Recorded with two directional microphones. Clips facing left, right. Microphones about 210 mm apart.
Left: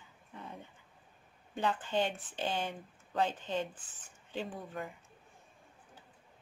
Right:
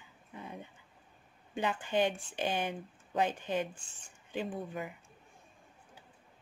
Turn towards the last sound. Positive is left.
turn(degrees=-15)  # may be behind; listen again after turning